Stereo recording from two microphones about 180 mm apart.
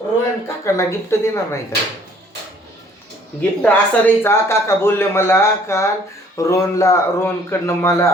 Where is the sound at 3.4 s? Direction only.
10° left (ahead or behind).